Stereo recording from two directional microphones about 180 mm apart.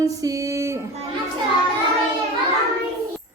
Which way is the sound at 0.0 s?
20° right (ahead or behind).